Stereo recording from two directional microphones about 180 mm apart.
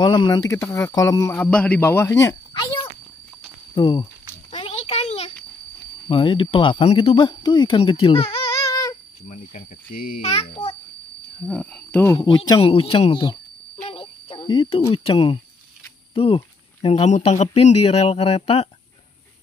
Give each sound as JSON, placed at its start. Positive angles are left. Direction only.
{"t": 0.0, "sound": "speech", "side_deg": 25}
{"t": 2.2, "sound": "a sound", "side_deg": 25}
{"t": 3.7, "sound": "speech", "side_deg": 25}
{"t": 4.5, "sound": "a sound", "side_deg": 35}
{"t": 6.0, "sound": "speech", "side_deg": 30}
{"t": 8.5, "sound": "child singing", "side_deg": 20}
{"t": 9.3, "sound": "speech", "side_deg": 40}
{"t": 11.4, "sound": "speech", "side_deg": 5}
{"t": 12.4, "sound": "speech", "side_deg": 30}
{"t": 13.8, "sound": "cricket", "side_deg": 30}
{"t": 14.9, "sound": "speech", "side_deg": 30}